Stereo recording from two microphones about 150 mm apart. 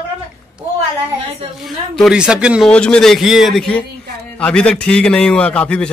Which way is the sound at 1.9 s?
5° right (ahead or behind).